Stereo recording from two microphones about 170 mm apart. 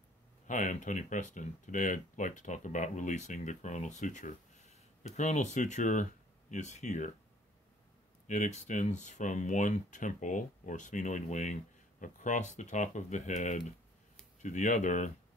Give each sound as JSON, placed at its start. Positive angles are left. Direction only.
{"t": 0.5, "sound": "speech", "side_deg": 45}
{"t": 8.3, "sound": "speech", "side_deg": 45}